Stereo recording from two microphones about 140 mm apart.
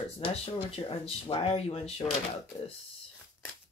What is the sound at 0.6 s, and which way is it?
Speech, 40° left (ahead or behind).